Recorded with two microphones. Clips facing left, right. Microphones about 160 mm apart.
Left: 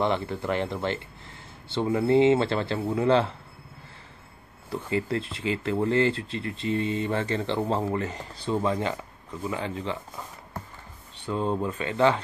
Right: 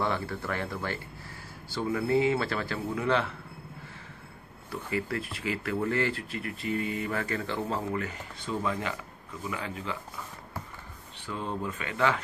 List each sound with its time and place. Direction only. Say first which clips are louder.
0.0 s speech: left 5 dB; 20° left (ahead or behind)
4.6 s speech: left 4 dB; 25° left (ahead or behind)
11.2 s speech: left 7 dB; 30° left (ahead or behind)